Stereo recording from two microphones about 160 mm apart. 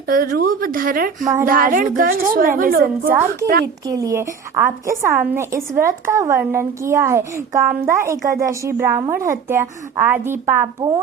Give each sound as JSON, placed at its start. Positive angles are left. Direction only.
{"t": 0.1, "sound": "a woman's voice", "side_deg": -65}
{"t": 3.8, "sound": "a woman's voice", "side_deg": -20}